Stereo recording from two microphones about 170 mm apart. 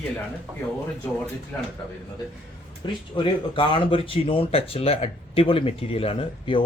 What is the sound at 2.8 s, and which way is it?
Speech, 25° left (ahead or behind).